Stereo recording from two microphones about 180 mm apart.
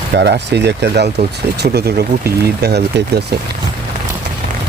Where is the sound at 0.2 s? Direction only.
70° right (ahead or behind).